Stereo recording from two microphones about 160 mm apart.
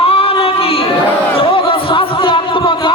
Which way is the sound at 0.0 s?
35° left (ahead or behind).